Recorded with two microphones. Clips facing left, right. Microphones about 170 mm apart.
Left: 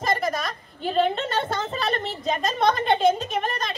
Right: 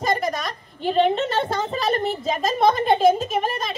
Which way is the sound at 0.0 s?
Centre (ahead or behind).